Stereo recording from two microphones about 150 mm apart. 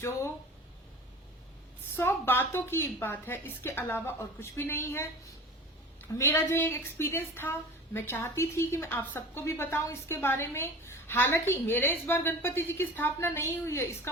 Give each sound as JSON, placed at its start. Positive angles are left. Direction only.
{"t": 2.0, "sound": "a woman's voice", "side_deg": 15}
{"t": 6.1, "sound": "a woman's voice", "side_deg": 20}